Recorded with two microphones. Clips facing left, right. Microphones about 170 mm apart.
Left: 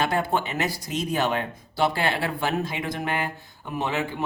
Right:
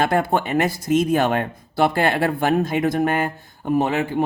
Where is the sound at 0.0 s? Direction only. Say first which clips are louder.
Right 5 dB; 50° right (ahead or behind).